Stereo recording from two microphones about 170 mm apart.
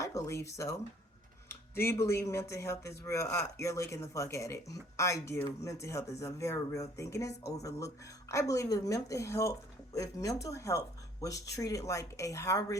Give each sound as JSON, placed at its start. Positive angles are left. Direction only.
{"t": 0.0, "sound": "a woman's voice", "side_deg": 15}